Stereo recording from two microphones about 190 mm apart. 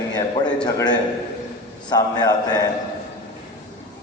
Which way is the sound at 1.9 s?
20° left (ahead or behind).